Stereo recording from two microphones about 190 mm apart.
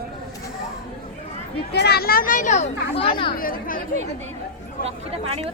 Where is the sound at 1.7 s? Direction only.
60° left (ahead or behind); by 3.3 s 30° left (ahead or behind).